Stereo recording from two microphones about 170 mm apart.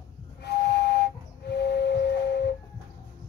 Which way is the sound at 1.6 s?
75° left (ahead or behind).